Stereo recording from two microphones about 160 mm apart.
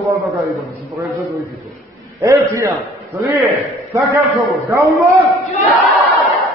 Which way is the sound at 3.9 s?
20° right (ahead or behind).